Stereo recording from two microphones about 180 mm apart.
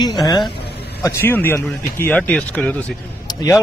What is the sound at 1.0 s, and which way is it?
Speech, 10° left (ahead or behind).